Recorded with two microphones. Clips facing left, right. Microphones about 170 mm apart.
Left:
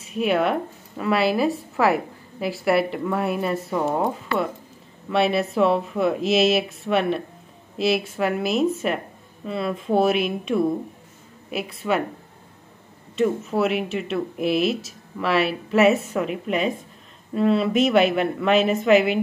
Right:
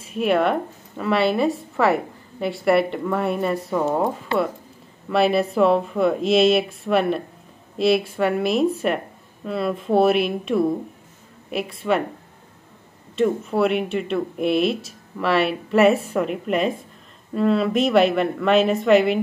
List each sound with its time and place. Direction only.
0.1 s speech: centre (ahead or behind)
13.2 s speech: centre (ahead or behind)